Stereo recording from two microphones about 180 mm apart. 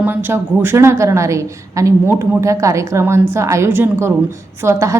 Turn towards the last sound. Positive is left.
turn(degrees=-15)  # may be behind; listen again after turning